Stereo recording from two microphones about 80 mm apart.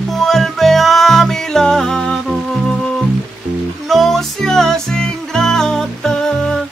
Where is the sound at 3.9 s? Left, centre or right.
Centre.